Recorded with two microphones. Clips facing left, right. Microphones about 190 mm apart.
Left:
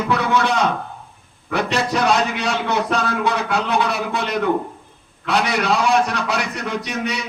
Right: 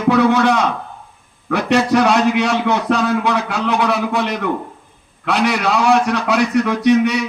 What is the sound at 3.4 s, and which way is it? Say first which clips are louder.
Speech: even; 60° left (ahead or behind).